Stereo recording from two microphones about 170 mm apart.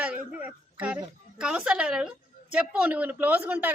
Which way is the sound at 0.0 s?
10° right (ahead or behind).